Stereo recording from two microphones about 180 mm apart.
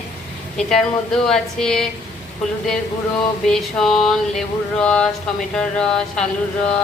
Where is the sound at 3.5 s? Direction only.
Centre (ahead or behind).